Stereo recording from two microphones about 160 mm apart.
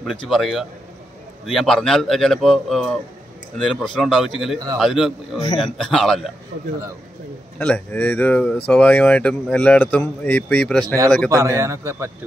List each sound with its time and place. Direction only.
0.3 s a man's voice: centre (ahead or behind)
7.5 s a man's voice: 10° left (ahead or behind)
11.2 s a man's voice: 20° right (ahead or behind)